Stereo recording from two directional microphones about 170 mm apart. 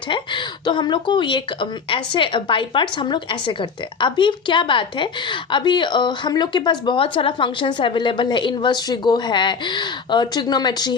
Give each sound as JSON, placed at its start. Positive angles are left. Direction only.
{"t": 0.1, "sound": "speech", "side_deg": 25}